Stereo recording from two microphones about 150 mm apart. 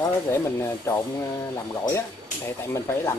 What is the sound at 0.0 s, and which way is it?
Speech, 20° left (ahead or behind).